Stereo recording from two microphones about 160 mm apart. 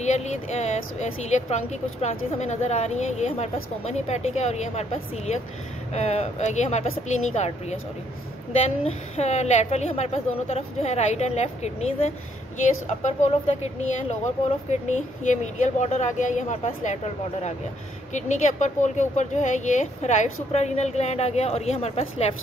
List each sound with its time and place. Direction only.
0.0 s speech: 45° left (ahead or behind)
8.5 s a woman's voice: 40° left (ahead or behind)